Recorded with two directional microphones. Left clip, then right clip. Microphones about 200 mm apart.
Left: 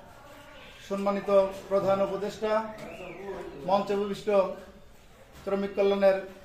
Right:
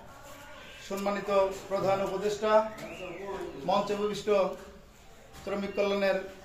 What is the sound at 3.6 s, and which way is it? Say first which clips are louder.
Speech: left 2 dB; 15° left (ahead or behind).